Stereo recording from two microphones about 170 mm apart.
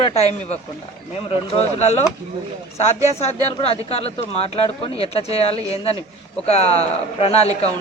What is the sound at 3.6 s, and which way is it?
Speech, 35° left (ahead or behind).